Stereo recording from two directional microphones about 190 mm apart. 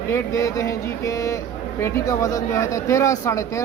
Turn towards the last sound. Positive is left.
turn(degrees=15)  # may be behind; listen again after turning